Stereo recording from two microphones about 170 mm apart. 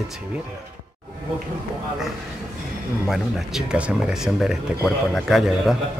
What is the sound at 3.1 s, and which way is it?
A man's voice, centre (ahead or behind).